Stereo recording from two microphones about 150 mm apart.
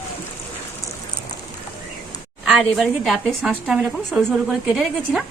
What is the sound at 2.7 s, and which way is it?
A woman's voice, 5° right (ahead or behind).